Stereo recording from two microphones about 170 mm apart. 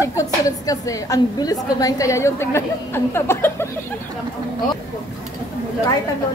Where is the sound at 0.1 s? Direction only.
20° left (ahead or behind).